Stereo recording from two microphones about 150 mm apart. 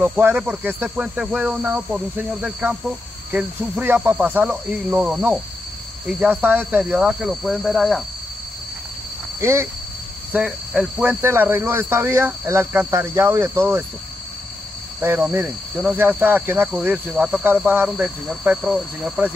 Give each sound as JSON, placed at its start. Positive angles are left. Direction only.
{"t": 0.0, "sound": "snake", "side_deg": -15}
{"t": 6.0, "sound": "cricket", "side_deg": -10}
{"t": 9.4, "sound": "snake", "side_deg": -20}
{"t": 15.0, "sound": "snake", "side_deg": -10}
{"t": 17.8, "sound": "cricket", "side_deg": -5}